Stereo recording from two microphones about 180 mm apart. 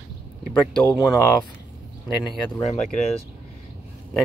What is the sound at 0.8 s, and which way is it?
Speech, 15° left (ahead or behind).